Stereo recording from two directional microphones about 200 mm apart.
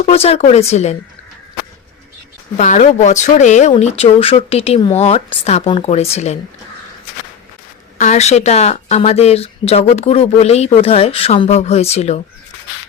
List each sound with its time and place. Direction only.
0.0 s speech: 30° left (ahead or behind)
2.6 s speech: 35° left (ahead or behind)
7.9 s speech: 35° left (ahead or behind)